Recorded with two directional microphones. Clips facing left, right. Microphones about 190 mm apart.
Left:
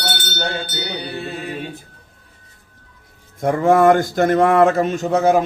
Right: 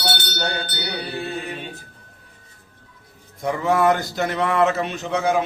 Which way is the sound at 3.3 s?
50° left (ahead or behind).